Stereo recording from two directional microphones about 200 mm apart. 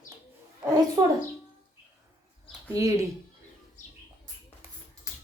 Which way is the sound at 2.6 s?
15° right (ahead or behind).